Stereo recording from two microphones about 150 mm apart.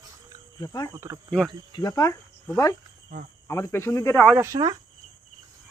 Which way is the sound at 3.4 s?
20° left (ahead or behind).